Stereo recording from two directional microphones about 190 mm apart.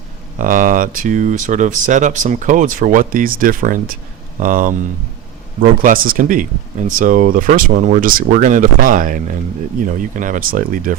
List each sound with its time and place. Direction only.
0.3 s speech: 45° right (ahead or behind)